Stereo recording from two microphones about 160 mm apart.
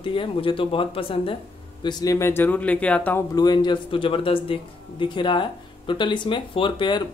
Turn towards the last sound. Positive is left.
turn(degrees=30)  # may be behind; listen again after turning